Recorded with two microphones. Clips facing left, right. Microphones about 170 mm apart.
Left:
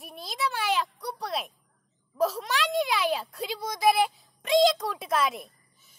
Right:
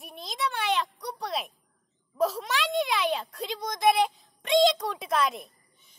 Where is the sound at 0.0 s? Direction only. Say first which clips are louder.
Even; centre (ahead or behind).